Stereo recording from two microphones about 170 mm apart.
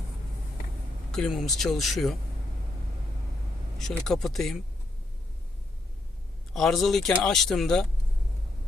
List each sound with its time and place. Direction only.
1.1 s speech: centre (ahead or behind)
3.8 s speech: centre (ahead or behind)
6.5 s speech: centre (ahead or behind)